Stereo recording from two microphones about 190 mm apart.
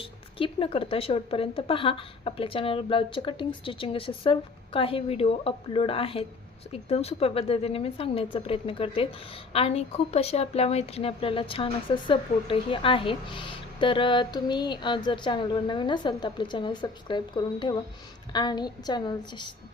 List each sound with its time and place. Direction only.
0.0 s a woman's voice: 30° left (ahead or behind)